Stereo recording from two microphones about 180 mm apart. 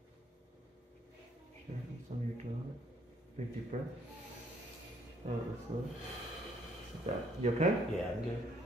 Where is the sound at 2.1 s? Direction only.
35° right (ahead or behind).